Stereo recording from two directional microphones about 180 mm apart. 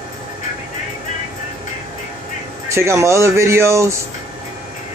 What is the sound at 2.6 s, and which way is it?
Speech, 15° right (ahead or behind).